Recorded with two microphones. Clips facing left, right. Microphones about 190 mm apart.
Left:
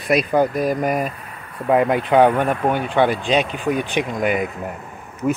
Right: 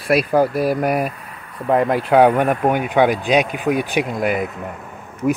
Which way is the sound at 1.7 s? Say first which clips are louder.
Even; centre (ahead or behind).